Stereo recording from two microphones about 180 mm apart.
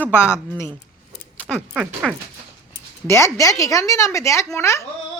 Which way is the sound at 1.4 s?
10° left (ahead or behind).